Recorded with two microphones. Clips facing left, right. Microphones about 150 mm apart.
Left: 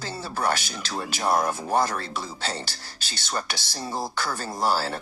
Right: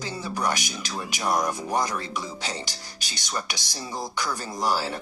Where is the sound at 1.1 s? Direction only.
35° left (ahead or behind).